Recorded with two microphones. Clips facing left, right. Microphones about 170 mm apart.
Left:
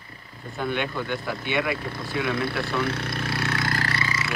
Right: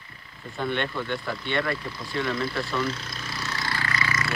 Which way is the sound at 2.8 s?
60° left (ahead or behind).